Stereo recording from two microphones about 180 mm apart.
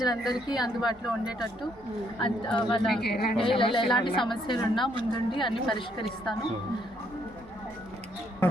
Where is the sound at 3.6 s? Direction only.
30° left (ahead or behind).